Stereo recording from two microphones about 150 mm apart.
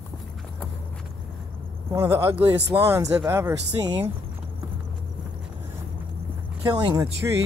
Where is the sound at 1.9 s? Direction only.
15° right (ahead or behind).